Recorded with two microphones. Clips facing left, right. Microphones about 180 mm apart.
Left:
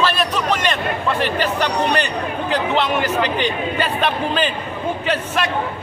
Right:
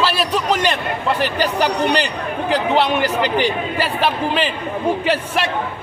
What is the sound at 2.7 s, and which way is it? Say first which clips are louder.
Speech: right 1 dB; 35° right (ahead or behind).